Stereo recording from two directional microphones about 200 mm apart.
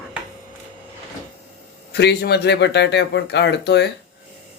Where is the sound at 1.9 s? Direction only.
55° left (ahead or behind).